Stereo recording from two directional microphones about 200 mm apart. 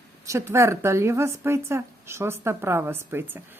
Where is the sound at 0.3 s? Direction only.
15° right (ahead or behind).